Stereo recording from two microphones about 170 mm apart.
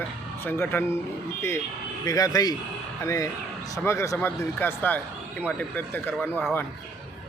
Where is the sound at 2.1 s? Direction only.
20° left (ahead or behind).